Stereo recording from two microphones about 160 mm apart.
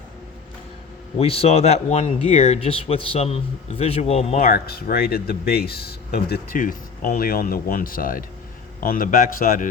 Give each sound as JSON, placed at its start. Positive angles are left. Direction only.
{"t": 1.2, "sound": "speech", "side_deg": 40}
{"t": 4.4, "sound": "a man's voice", "side_deg": 70}